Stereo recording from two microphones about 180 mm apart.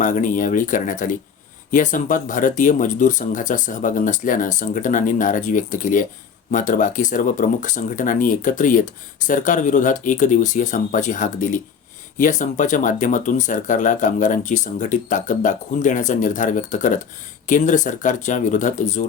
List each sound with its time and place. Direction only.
0.0 s speech: 45° left (ahead or behind)